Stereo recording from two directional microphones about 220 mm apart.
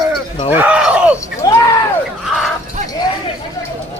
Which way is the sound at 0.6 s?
5° right (ahead or behind).